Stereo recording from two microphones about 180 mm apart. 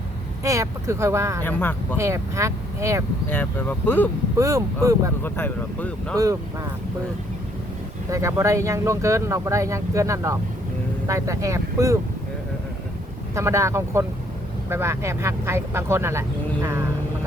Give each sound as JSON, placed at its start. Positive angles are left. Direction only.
{"t": 0.4, "sound": "speech", "side_deg": -15}
{"t": 1.5, "sound": "speech", "side_deg": 10}
{"t": 2.0, "sound": "speech", "side_deg": -15}
{"t": 3.2, "sound": "speech", "side_deg": 10}
{"t": 4.4, "sound": "speech", "side_deg": -15}
{"t": 5.2, "sound": "speech", "side_deg": 10}
{"t": 8.1, "sound": "speech", "side_deg": -15}
{"t": 13.3, "sound": "speech", "side_deg": -15}